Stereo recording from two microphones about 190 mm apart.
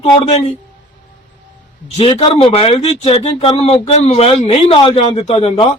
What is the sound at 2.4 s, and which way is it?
A man's voice, 30° left (ahead or behind).